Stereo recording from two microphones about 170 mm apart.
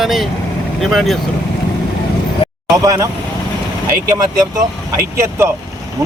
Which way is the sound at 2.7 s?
20° right (ahead or behind).